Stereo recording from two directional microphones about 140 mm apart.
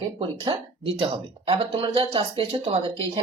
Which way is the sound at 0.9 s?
40° right (ahead or behind).